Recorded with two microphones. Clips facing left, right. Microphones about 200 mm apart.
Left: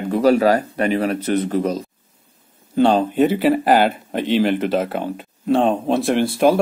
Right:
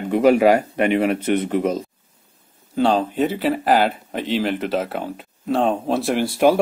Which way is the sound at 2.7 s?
Centre (ahead or behind).